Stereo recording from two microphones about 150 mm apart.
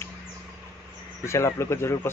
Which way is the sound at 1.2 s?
20° left (ahead or behind).